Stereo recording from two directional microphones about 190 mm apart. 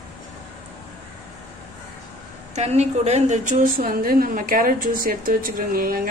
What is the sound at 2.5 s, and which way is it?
A woman's voice, 35° right (ahead or behind).